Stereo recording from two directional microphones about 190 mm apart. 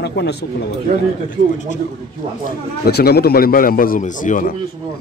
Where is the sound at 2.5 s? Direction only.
55° left (ahead or behind).